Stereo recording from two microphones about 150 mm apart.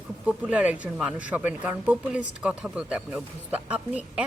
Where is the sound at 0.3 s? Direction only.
10° right (ahead or behind).